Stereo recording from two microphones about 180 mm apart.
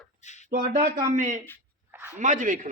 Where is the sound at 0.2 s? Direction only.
40° left (ahead or behind).